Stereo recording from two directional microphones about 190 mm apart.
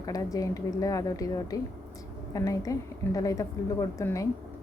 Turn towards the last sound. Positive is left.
turn(degrees=15)  # may be behind; listen again after turning